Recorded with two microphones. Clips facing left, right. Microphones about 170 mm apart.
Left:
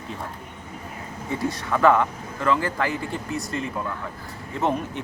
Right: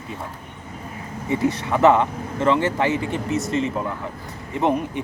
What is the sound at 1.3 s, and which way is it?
Speech, 20° right (ahead or behind).